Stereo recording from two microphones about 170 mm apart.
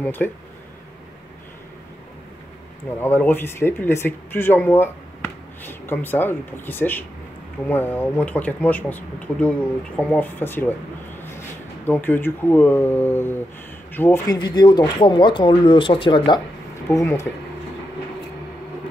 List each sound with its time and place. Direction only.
0.0 s speech: 10° left (ahead or behind)
3.0 s speech: 10° left (ahead or behind)
11.8 s speech: 10° left (ahead or behind)
14.3 s speech: 25° left (ahead or behind)
16.9 s speech: 15° left (ahead or behind)